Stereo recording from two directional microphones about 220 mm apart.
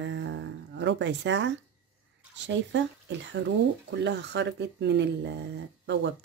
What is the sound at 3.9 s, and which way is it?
Speech, 50° right (ahead or behind).